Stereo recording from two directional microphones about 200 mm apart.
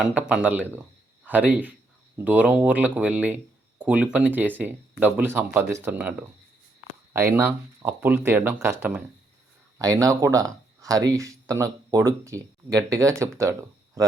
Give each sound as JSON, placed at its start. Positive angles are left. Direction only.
{"t": 0.0, "sound": "a man's voice", "side_deg": -5}